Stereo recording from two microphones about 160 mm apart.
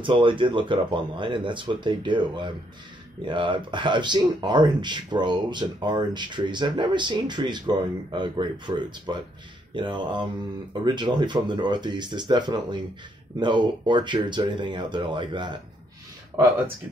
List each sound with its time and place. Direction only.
0.0 s speech: 30° right (ahead or behind)